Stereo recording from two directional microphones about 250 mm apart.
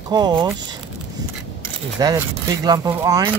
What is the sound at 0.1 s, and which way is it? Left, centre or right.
Speech, centre.